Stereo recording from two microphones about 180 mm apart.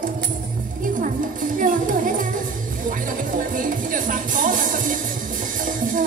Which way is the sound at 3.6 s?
50° right (ahead or behind).